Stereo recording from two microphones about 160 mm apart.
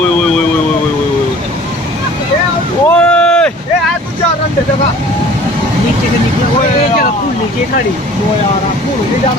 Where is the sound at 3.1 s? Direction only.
5° left (ahead or behind).